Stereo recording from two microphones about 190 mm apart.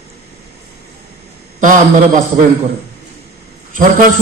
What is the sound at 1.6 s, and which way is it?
Speech, 40° right (ahead or behind).